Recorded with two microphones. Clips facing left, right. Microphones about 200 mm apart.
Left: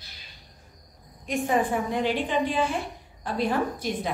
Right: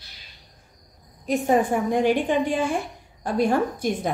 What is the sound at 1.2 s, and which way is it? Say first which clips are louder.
A woman's voice: right 4 dB; 40° right (ahead or behind).